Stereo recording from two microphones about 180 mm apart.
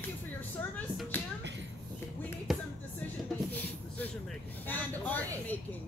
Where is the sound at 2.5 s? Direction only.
Centre (ahead or behind).